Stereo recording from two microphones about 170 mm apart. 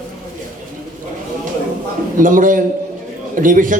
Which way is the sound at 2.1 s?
50° right (ahead or behind).